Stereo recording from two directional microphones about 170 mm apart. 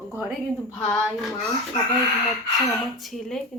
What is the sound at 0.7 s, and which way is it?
Speech, 5° left (ahead or behind).